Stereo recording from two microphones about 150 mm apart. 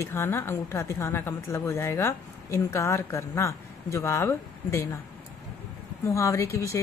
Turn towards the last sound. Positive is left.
turn(degrees=20)  # may be behind; listen again after turning